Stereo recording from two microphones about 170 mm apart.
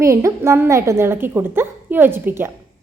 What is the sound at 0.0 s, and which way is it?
A woman's voice, 15° right (ahead or behind).